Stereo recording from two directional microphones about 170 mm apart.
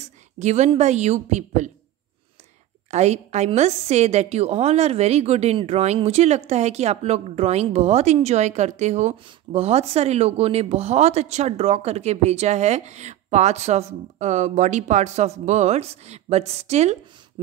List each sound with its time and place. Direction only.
0.4 s a woman's voice: 40° right (ahead or behind)
2.9 s a woman's voice: 40° right (ahead or behind)